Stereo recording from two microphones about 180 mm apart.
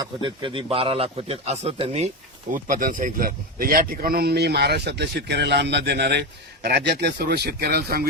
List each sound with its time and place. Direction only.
0.0 s a man's voice: 25° right (ahead or behind)
2.5 s speech: 50° right (ahead or behind)